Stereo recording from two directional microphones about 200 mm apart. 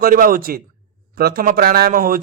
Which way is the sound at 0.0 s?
45° right (ahead or behind).